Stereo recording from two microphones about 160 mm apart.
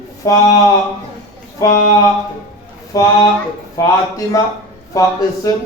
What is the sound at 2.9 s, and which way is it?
A man's voice, 20° left (ahead or behind).